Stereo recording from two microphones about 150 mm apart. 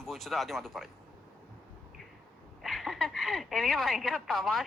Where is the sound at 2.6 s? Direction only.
Centre (ahead or behind).